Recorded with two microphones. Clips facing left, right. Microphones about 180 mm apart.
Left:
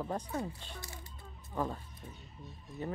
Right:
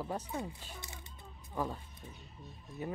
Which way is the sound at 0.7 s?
20° right (ahead or behind).